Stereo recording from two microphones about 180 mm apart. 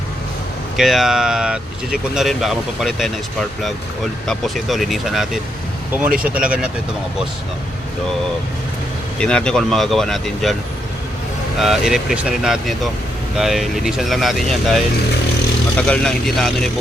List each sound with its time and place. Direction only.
0.8 s speech: centre (ahead or behind)
4.3 s speech: centre (ahead or behind)
9.1 s speech: 5° left (ahead or behind)
11.6 s speech: centre (ahead or behind)
15.9 s speech: 5° left (ahead or behind)